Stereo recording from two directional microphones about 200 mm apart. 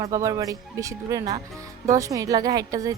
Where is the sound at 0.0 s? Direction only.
15° right (ahead or behind).